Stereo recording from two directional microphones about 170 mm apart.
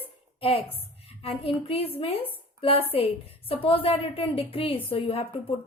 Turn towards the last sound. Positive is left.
turn(degrees=35)  # may be behind; listen again after turning